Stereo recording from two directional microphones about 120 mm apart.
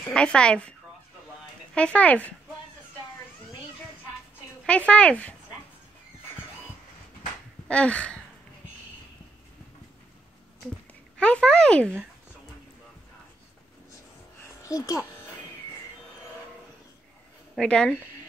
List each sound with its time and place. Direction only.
0.0 s a woman's voice: 10° left (ahead or behind)
1.8 s a woman's voice: 10° left (ahead or behind)
4.6 s a woman's voice: 10° left (ahead or behind)
7.6 s a sound: 10° left (ahead or behind)
11.1 s a woman's voice: 10° left (ahead or behind)
14.6 s a child's voice: 30° left (ahead or behind)
17.6 s a woman's voice: 5° left (ahead or behind)